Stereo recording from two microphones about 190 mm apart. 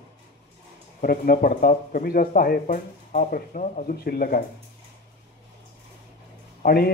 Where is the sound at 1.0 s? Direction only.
50° left (ahead or behind).